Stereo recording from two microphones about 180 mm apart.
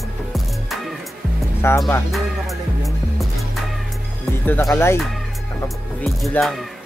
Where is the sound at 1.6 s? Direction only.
15° left (ahead or behind).